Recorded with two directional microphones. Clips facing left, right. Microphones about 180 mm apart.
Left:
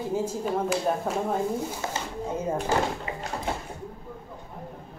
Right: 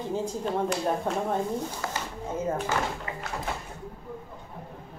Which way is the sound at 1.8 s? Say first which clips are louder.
Left 1 dB; 25° left (ahead or behind).